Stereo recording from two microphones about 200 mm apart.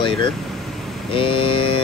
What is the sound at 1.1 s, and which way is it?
Speech, 25° left (ahead or behind).